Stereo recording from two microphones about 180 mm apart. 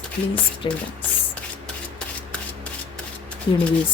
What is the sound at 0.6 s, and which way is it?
Speech, 30° left (ahead or behind).